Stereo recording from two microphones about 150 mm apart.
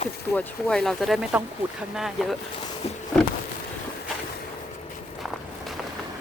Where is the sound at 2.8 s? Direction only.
45° left (ahead or behind).